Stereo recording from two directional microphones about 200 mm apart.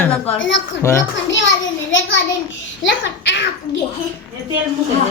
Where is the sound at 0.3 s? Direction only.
65° left (ahead or behind).